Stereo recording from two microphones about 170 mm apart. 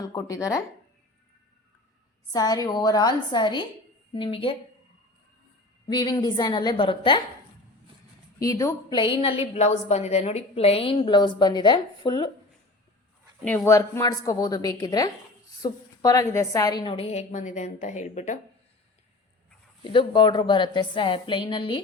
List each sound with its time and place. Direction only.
0.0 s a woman's voice: 20° left (ahead or behind)
2.3 s a woman's voice: 20° left (ahead or behind)
5.9 s a woman's voice: 25° left (ahead or behind)
8.4 s a woman's voice: 20° left (ahead or behind)
13.4 s speech: 5° left (ahead or behind)
13.7 s a woman's voice: 20° left (ahead or behind); by 18.3 s 45° left (ahead or behind)
19.8 s a woman's voice: 30° left (ahead or behind)